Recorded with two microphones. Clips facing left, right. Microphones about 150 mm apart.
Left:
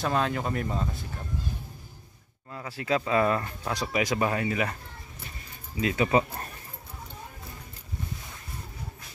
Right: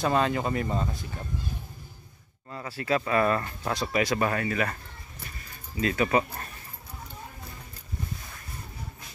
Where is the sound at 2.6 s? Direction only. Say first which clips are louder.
Even; 15° left (ahead or behind).